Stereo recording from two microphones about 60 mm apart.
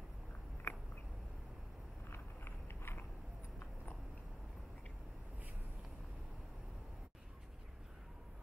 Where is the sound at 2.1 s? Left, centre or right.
Left.